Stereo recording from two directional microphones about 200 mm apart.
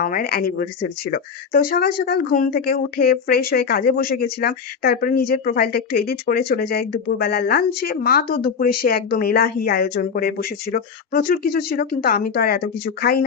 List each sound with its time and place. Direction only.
0.0 s speech: 45° left (ahead or behind)